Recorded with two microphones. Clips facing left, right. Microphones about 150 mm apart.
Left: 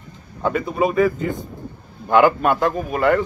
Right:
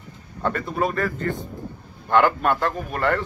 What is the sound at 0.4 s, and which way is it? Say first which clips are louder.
A man's voice: left 4 dB; 5° left (ahead or behind).